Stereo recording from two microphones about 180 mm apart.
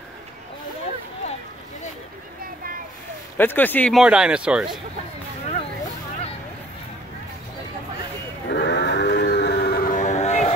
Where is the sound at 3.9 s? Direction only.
5° right (ahead or behind).